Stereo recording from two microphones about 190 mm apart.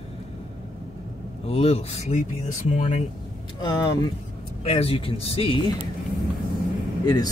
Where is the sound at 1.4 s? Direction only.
30° left (ahead or behind).